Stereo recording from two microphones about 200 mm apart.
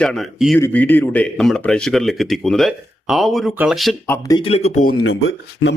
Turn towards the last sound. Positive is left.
turn(degrees=80)